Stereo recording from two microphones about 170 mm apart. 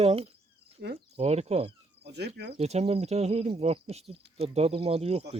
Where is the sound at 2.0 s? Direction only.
75° right (ahead or behind).